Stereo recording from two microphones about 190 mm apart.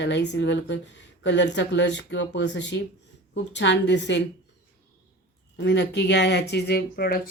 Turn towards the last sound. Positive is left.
turn(degrees=55)  # may be behind; listen again after turning